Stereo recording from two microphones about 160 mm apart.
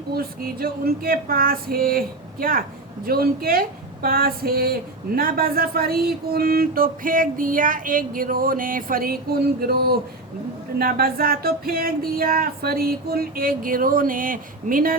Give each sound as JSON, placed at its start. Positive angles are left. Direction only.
{"t": 0.1, "sound": "female singing", "side_deg": -70}